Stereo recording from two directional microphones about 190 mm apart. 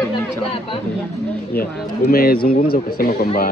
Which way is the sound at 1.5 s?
50° left (ahead or behind).